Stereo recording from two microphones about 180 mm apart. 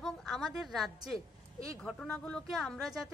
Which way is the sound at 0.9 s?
20° right (ahead or behind).